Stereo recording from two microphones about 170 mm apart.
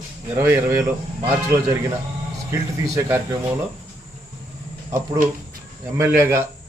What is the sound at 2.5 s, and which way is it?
Speech, 15° right (ahead or behind).